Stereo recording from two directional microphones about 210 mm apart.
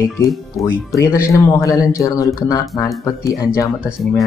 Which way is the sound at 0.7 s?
10° left (ahead or behind).